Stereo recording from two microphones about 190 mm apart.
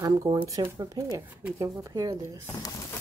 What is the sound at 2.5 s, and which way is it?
Speech, 15° left (ahead or behind).